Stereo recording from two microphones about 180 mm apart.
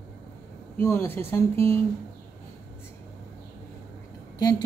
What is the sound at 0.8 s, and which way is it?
Speech, 10° left (ahead or behind).